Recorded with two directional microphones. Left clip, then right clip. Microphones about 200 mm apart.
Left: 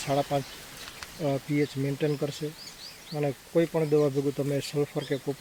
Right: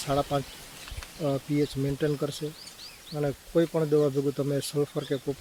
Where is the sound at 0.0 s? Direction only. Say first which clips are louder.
Even; 15° right (ahead or behind).